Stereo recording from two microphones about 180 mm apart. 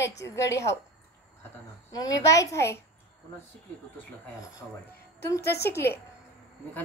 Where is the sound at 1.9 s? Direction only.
20° left (ahead or behind).